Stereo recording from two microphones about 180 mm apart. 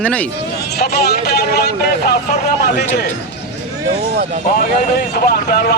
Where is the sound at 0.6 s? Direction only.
65° left (ahead or behind).